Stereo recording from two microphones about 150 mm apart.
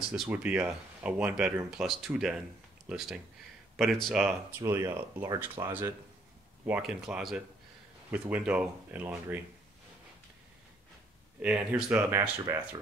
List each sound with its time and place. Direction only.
0.1 s speech: 10° right (ahead or behind)
4.6 s speech: 20° right (ahead or behind)
6.6 s speech: 5° right (ahead or behind)
11.4 s speech: 10° right (ahead or behind)
12.1 s speech: 20° right (ahead or behind)